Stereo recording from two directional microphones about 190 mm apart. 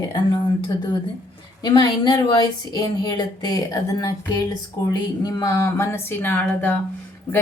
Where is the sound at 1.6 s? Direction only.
25° left (ahead or behind).